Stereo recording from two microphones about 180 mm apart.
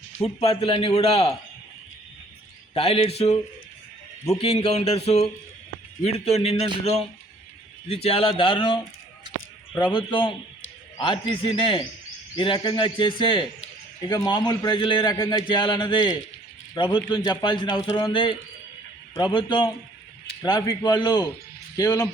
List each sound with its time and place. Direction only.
0.2 s a man's voice: 35° left (ahead or behind)
2.7 s a man's voice: 30° left (ahead or behind)
4.6 s a man's voice: 35° left (ahead or behind)